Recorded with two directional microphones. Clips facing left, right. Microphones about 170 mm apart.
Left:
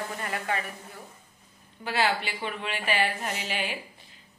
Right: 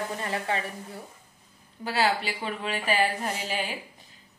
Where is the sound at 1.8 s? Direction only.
40° right (ahead or behind).